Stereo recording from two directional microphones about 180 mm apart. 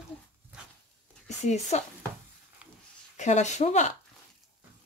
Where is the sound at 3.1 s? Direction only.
40° left (ahead or behind).